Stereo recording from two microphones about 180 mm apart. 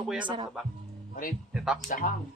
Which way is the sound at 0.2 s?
25° right (ahead or behind).